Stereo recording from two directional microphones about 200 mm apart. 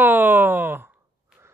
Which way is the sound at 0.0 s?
10° right (ahead or behind).